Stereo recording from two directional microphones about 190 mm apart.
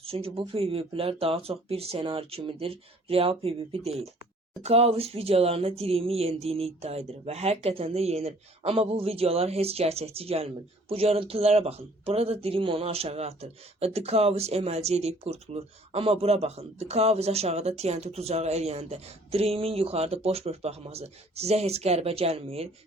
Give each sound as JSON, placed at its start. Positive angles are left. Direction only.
{"t": 0.0, "sound": "speech", "side_deg": -30}